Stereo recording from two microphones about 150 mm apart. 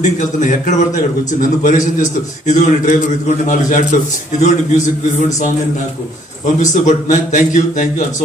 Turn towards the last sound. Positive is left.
turn(degrees=55)  # may be behind; listen again after turning